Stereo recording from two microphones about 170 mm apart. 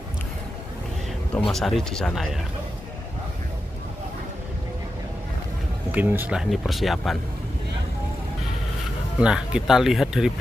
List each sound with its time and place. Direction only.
1.5 s speech: centre (ahead or behind)
5.9 s speech: 10° right (ahead or behind)
9.2 s speech: 5° right (ahead or behind)